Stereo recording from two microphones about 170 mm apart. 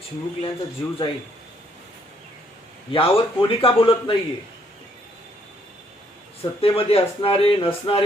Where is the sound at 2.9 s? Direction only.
30° left (ahead or behind).